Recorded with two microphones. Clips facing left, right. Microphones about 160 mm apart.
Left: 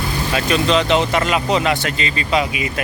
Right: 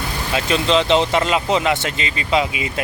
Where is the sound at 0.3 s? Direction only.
25° right (ahead or behind).